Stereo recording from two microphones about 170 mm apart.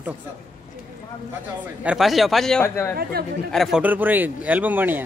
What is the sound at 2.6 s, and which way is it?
Speech, 15° left (ahead or behind).